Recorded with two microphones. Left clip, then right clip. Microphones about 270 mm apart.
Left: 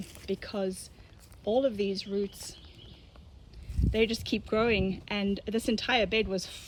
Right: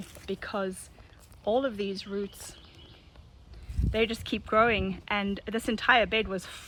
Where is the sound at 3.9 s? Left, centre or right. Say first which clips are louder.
Even; centre.